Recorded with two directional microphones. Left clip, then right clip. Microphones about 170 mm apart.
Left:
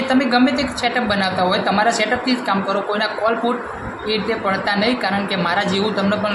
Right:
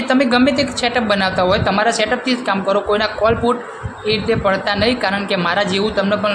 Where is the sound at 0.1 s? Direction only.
40° right (ahead or behind).